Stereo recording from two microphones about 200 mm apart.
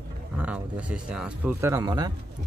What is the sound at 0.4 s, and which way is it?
Speech, 5° right (ahead or behind).